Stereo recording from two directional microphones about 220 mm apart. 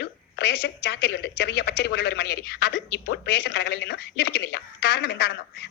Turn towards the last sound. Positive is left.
turn(degrees=50)  # may be behind; listen again after turning